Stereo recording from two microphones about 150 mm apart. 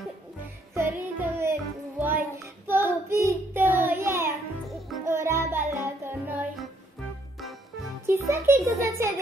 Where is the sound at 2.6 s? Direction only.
15° right (ahead or behind).